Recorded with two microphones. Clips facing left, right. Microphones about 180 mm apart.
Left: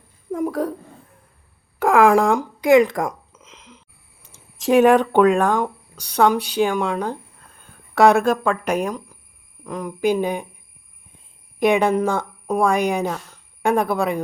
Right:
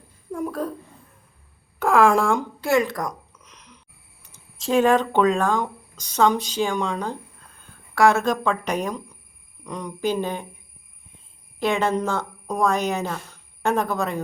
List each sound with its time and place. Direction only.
0.3 s a sound: 20° left (ahead or behind)
1.8 s speech: 15° left (ahead or behind)
3.0 s a sound: 25° left (ahead or behind)
4.3 s speech: 20° left (ahead or behind)
7.9 s speech: 20° left (ahead or behind)
8.2 s speech: 10° left (ahead or behind)
11.6 s speech: 15° left (ahead or behind)